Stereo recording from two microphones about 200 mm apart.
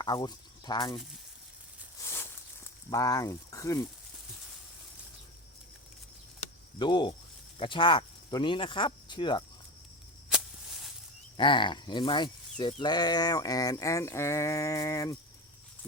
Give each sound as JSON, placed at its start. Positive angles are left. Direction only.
{"t": 0.0, "sound": "speech", "side_deg": 20}
{"t": 2.0, "sound": "a sound", "side_deg": 15}
{"t": 2.9, "sound": "speech", "side_deg": 15}
{"t": 6.7, "sound": "speech", "side_deg": 20}
{"t": 10.2, "sound": "a sound", "side_deg": 0}
{"t": 11.3, "sound": "speech", "side_deg": 25}